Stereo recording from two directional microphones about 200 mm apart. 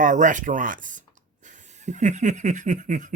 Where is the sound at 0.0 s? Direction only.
40° right (ahead or behind).